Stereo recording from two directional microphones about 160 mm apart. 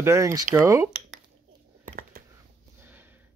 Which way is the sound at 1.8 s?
65° right (ahead or behind).